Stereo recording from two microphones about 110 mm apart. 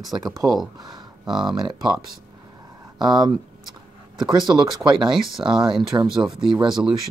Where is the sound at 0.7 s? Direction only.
40° right (ahead or behind).